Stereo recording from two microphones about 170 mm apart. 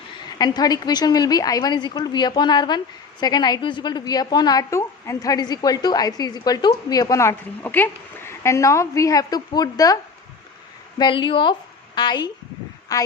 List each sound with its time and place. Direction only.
0.3 s a woman's voice: 25° left (ahead or behind)